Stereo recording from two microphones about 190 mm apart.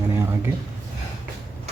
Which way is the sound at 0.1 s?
15° right (ahead or behind).